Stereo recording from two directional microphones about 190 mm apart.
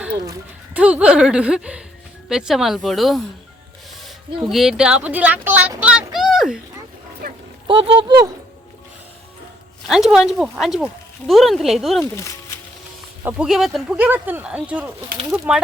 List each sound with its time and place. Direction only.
0.7 s a woman's voice: 5° right (ahead or behind)
6.1 s a sound: centre (ahead or behind)
7.7 s speech: 25° right (ahead or behind)
9.8 s a woman's voice: centre (ahead or behind)
12.1 s speech: 15° left (ahead or behind)
13.2 s a woman's voice: 5° right (ahead or behind)